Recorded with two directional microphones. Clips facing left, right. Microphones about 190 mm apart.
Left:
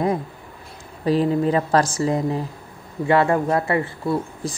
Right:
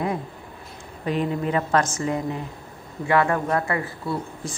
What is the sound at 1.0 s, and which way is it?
A woman's voice, 35° left (ahead or behind).